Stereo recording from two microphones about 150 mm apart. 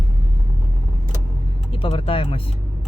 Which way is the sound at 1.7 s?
35° left (ahead or behind).